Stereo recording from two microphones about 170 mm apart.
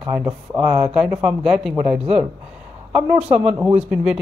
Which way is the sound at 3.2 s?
40° right (ahead or behind).